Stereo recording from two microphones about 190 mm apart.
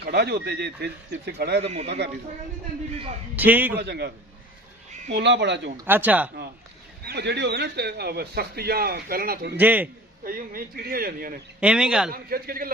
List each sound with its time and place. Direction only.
0.0 s speech: 60° right (ahead or behind)
1.6 s a man's voice: 35° right (ahead or behind)
3.3 s speech: 10° right (ahead or behind)
3.8 s speech: 60° right (ahead or behind)
5.1 s speech: 65° right (ahead or behind)
5.7 s speech: 10° right (ahead or behind)
7.0 s speech: 60° right (ahead or behind)
9.6 s speech: 10° right (ahead or behind)
10.2 s speech: 50° right (ahead or behind)
11.6 s a man's voice: 5° right (ahead or behind)
12.1 s speech: 50° right (ahead or behind)